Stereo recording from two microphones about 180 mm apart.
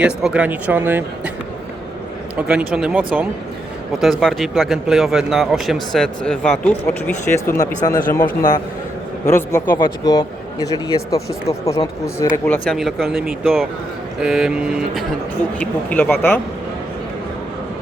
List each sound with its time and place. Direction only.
0.0 s speech: 5° right (ahead or behind)
2.3 s speech: 5° right (ahead or behind); by 12.3 s 20° left (ahead or behind)
12.5 s speech: centre (ahead or behind)
15.6 s speech: 5° left (ahead or behind)